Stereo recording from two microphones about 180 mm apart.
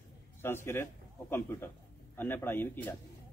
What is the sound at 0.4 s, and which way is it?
Speech, 15° left (ahead or behind).